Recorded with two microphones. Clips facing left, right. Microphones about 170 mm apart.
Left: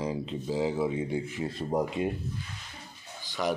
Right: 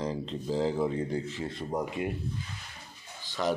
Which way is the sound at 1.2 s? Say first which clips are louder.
Left 2 dB; 25° right (ahead or behind).